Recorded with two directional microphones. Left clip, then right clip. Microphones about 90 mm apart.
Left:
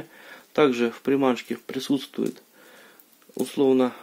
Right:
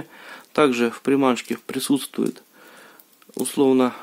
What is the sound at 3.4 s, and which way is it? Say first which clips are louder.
Speech: right 2 dB; 40° right (ahead or behind).